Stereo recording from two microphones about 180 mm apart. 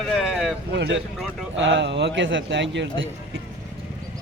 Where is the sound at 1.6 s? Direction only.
85° right.